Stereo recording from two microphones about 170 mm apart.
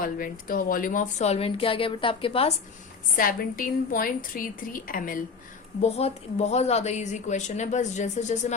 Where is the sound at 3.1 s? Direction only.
55° left (ahead or behind).